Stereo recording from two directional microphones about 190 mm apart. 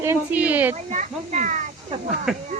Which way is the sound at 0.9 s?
40° right (ahead or behind).